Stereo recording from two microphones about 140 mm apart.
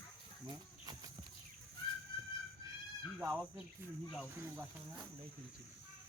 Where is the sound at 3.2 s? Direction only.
10° right (ahead or behind).